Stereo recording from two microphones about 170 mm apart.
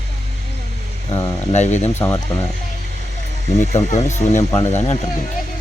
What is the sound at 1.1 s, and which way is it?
Speech, 40° left (ahead or behind).